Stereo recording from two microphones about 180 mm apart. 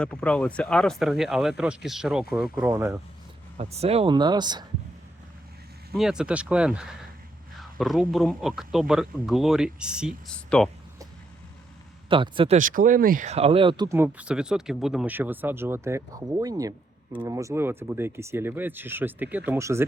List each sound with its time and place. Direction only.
0.0 s speech: 5° left (ahead or behind); by 2.9 s 10° right (ahead or behind)
3.6 s speech: 35° right (ahead or behind)
5.9 s speech: 5° right (ahead or behind)
12.0 s speech: 25° right (ahead or behind)
12.5 s speech: 50° right (ahead or behind); by 13.9 s 25° right (ahead or behind)
13.9 s speech: 10° right (ahead or behind)